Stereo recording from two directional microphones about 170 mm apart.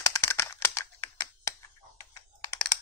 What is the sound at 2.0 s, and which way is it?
Computer keyboard, 20° left (ahead or behind).